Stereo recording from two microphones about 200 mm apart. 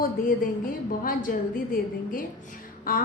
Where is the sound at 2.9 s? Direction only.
45° left (ahead or behind).